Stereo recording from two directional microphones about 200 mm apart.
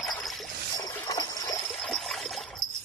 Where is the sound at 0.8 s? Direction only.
20° left (ahead or behind).